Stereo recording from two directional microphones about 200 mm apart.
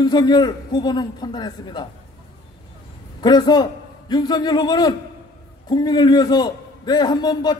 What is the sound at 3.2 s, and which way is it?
A man's voice, 20° left (ahead or behind).